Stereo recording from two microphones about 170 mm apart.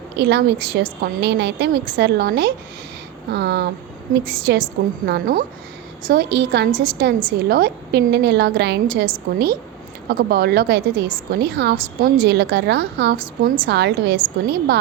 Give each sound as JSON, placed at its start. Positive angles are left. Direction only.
{"t": 0.2, "sound": "a woman's voice", "side_deg": -75}
{"t": 13.7, "sound": "a woman's voice", "side_deg": -85}